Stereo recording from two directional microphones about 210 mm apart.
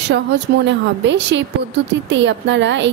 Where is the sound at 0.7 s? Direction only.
60° right (ahead or behind).